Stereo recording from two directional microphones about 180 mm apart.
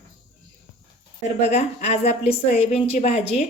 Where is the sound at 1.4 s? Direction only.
35° left (ahead or behind).